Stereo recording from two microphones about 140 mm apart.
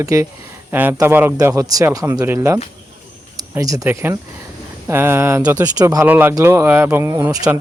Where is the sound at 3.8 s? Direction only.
15° right (ahead or behind).